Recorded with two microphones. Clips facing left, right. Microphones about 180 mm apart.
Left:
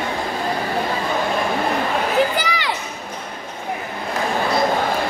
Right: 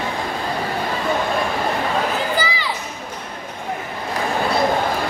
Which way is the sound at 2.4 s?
75° left (ahead or behind).